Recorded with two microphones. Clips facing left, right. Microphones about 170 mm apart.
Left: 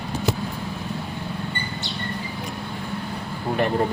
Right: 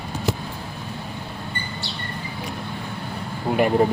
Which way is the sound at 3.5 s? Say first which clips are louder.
Right 4 dB; 10° right (ahead or behind).